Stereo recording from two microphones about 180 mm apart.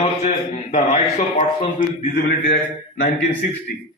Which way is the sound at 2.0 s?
60° left (ahead or behind).